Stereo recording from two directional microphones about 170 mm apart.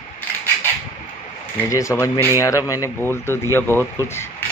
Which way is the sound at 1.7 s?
20° left (ahead or behind).